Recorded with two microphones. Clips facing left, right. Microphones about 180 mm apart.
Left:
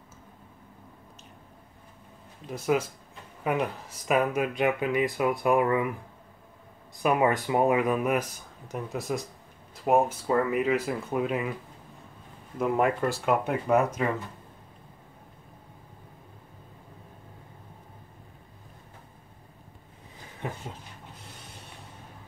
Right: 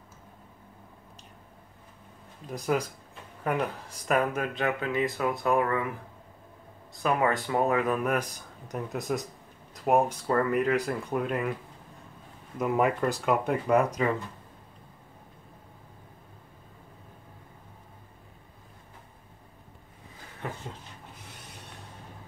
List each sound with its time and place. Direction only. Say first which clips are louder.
2.6 s speech: left 2 dB; 5° left (ahead or behind)
7.0 s speech: left 2 dB; 15° left (ahead or behind)
12.5 s speech: left 1 dB; centre (ahead or behind)